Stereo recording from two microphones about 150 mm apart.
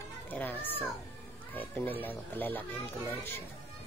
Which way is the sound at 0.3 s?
10° left (ahead or behind).